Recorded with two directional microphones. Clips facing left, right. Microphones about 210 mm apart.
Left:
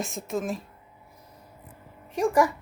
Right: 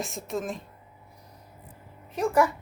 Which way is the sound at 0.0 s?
Centre (ahead or behind).